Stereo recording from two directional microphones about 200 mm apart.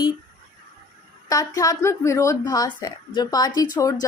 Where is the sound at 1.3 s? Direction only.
20° left (ahead or behind).